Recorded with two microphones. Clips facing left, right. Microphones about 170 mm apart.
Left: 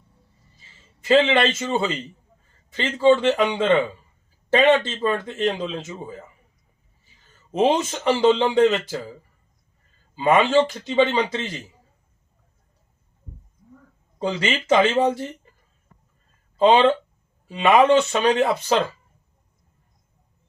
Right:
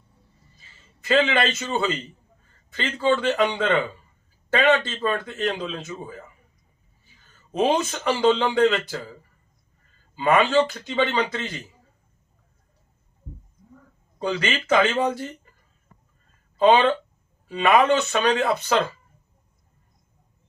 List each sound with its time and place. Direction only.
1.0 s speech: 25° left (ahead or behind)
7.5 s speech: 25° left (ahead or behind)
10.2 s speech: 25° left (ahead or behind)
14.2 s speech: 25° left (ahead or behind)
16.6 s speech: 25° left (ahead or behind)